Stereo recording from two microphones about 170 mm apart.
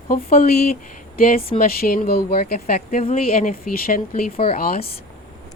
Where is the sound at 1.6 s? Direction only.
60° left (ahead or behind).